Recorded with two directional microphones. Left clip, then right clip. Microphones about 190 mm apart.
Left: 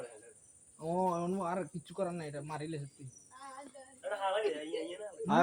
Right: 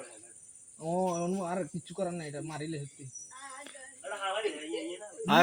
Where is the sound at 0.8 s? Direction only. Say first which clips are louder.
Right 2 dB; 30° right (ahead or behind).